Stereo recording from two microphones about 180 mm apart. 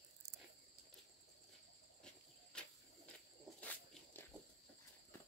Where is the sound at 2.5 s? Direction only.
5° left (ahead or behind).